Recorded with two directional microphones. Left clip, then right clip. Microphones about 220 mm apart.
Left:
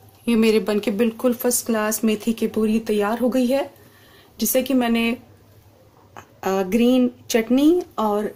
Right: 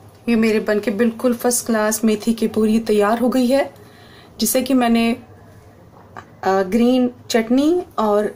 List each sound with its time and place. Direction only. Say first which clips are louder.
0.7 s speech: right 3 dB; 20° left (ahead or behind)
6.1 s speech: right 5 dB; 15° left (ahead or behind)